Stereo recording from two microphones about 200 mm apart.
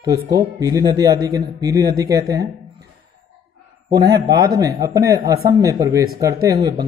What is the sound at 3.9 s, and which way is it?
A man's voice, 20° right (ahead or behind).